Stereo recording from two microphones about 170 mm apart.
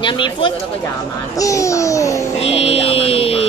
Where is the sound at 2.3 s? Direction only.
35° left (ahead or behind).